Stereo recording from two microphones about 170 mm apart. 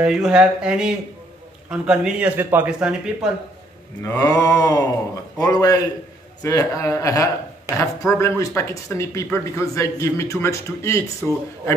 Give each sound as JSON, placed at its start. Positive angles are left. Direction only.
{"t": 0.0, "sound": "a man's voice", "side_deg": -5}
{"t": 4.0, "sound": "mantra", "side_deg": 20}
{"t": 8.0, "sound": "speech", "side_deg": 15}
{"t": 11.2, "sound": "a man's voice", "side_deg": 5}